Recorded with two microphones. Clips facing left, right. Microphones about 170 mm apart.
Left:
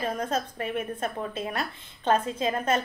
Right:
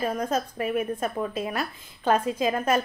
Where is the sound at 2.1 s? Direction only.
25° left (ahead or behind).